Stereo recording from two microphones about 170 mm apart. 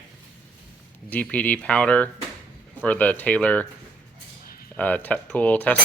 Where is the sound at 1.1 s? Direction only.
10° left (ahead or behind).